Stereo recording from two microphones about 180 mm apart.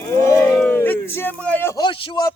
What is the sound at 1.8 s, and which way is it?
Speech, 25° left (ahead or behind).